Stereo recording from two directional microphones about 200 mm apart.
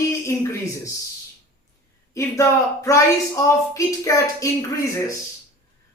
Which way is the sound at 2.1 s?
15° left (ahead or behind).